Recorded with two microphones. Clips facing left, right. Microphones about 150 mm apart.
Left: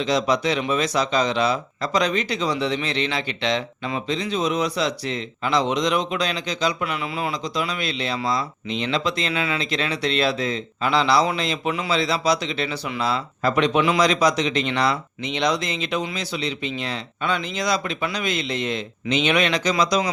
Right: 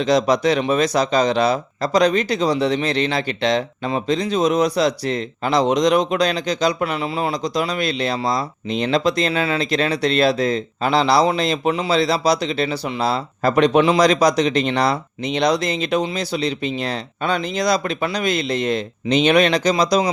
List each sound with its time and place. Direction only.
0.0 s speech: 40° right (ahead or behind)